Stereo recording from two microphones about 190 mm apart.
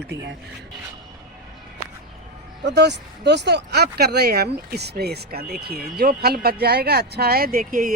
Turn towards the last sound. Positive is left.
turn(degrees=-45)  # may be behind; listen again after turning